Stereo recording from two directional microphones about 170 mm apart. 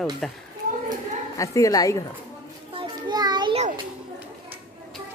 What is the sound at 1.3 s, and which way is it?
Speech, 20° left (ahead or behind).